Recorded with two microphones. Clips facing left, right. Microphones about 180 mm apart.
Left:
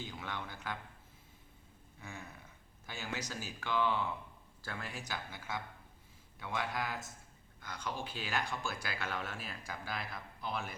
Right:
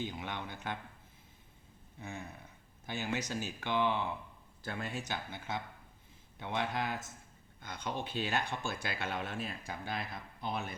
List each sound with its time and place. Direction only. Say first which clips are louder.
0.0 s speech: right 4 dB; 20° right (ahead or behind)
2.0 s speech: right 4 dB; 25° right (ahead or behind)